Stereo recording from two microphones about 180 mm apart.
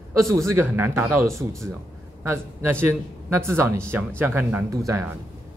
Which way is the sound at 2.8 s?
15° right (ahead or behind).